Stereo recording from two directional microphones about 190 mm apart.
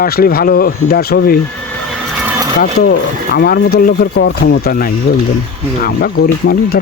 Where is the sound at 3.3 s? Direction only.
55° left (ahead or behind).